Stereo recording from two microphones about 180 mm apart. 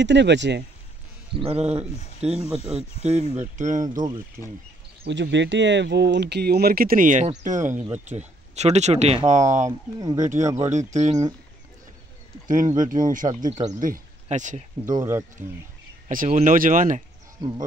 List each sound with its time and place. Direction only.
0.0 s speech: 75° right (ahead or behind)
1.3 s speech: 30° right (ahead or behind)
5.0 s speech: 80° right; by 9.7 s 40° right (ahead or behind)
9.7 s speech: 20° right (ahead or behind)
10.1 s speech: 40° right (ahead or behind)
10.4 s speech: 15° right (ahead or behind)
10.7 s speech: 40° right (ahead or behind)
12.4 s speech: 45° right (ahead or behind)
13.3 s speech: 20° right (ahead or behind)
13.7 s speech: 45° right (ahead or behind)
15.0 s speech: 15° right (ahead or behind)
16.1 s speech: 45° right (ahead or behind)